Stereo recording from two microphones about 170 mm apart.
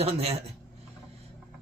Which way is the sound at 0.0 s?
35° right (ahead or behind).